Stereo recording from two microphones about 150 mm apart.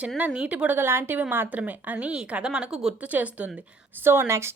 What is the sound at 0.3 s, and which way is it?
Speech, 10° right (ahead or behind).